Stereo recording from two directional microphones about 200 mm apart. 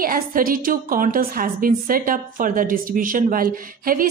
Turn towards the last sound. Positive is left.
turn(degrees=-45)  # may be behind; listen again after turning